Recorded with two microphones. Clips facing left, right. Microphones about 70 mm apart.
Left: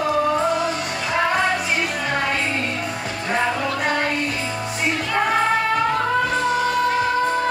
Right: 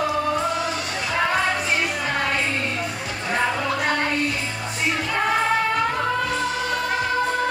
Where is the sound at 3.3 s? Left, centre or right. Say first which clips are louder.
Left 1 dB; centre.